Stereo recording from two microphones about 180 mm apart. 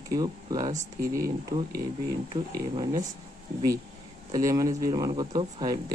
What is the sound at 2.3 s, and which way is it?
Speech, 30° right (ahead or behind).